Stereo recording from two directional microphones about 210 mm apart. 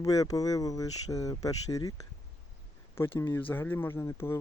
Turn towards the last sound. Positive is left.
turn(degrees=10)  # may be behind; listen again after turning